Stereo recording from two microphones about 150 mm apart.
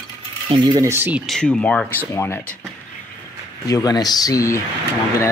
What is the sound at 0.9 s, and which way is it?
Speech, 15° right (ahead or behind).